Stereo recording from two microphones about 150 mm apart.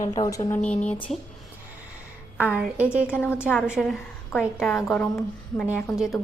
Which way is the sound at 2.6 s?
10° right (ahead or behind).